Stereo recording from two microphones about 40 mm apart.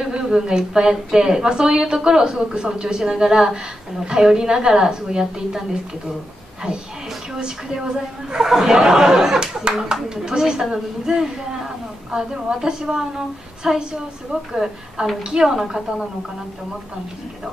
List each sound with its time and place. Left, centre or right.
0.1 s a woman's voice: centre
7.3 s a woman's voice: centre
15.5 s a woman's voice: centre